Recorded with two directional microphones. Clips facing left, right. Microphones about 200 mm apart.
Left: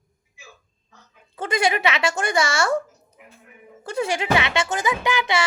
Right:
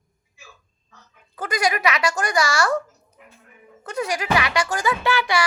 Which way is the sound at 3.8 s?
30° left (ahead or behind).